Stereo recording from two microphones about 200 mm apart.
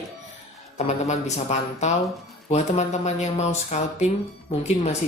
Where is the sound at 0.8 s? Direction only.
35° left (ahead or behind).